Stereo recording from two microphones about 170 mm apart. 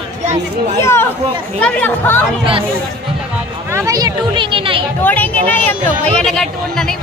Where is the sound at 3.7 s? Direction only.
20° right (ahead or behind).